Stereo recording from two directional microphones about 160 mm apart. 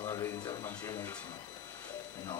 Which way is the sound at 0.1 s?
25° left (ahead or behind).